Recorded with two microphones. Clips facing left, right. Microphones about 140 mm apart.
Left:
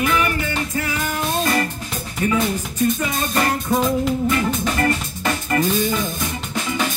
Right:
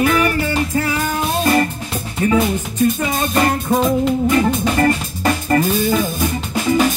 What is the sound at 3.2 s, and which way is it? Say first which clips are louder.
Music: right 4 dB; 25° right (ahead or behind).